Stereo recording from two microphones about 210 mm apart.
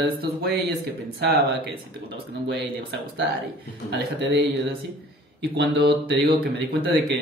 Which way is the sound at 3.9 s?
55° right (ahead or behind).